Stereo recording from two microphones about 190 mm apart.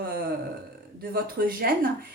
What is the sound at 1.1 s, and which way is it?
Speech, 50° right (ahead or behind).